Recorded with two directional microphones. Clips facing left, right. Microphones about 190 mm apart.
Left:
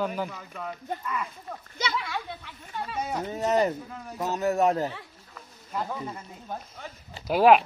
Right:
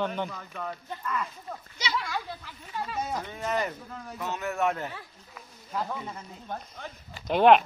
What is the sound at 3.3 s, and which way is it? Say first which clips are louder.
A man's voice: left 6 dB; 40° left (ahead or behind).